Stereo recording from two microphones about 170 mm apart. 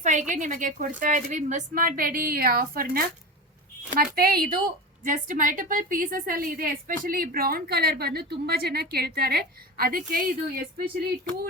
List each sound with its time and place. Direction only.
0.0 s a woman's voice: 45° right (ahead or behind)